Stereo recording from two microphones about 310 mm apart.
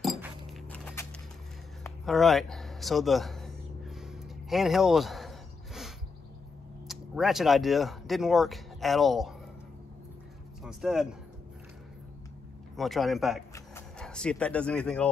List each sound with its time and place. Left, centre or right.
0.0 s dog: centre
1.8 s a sound: centre
6.9 s speech: centre
10.6 s speech: centre
12.7 s speech: centre